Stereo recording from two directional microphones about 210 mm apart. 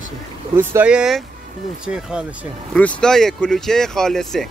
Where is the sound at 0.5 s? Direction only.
10° right (ahead or behind).